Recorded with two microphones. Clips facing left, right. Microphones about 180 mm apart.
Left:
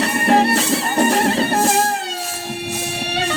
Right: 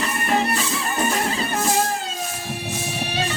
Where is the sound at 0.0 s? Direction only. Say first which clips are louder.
Left 7 dB; 70° left (ahead or behind).